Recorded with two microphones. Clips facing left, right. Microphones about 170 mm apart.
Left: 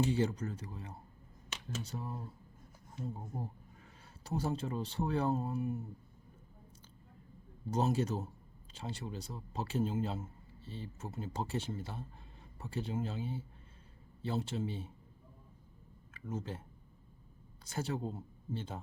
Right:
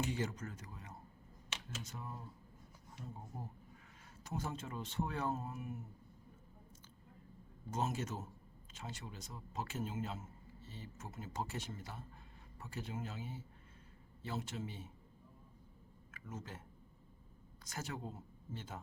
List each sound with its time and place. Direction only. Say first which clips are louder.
0.0 s a man's voice: left 7 dB; 30° left (ahead or behind)
4.2 s a man's voice: left 7 dB; 35° left (ahead or behind)
7.7 s a man's voice: left 7 dB; 35° left (ahead or behind)
16.1 s speech: left 8 dB; 30° left (ahead or behind)
17.7 s speech: left 7 dB; 30° left (ahead or behind)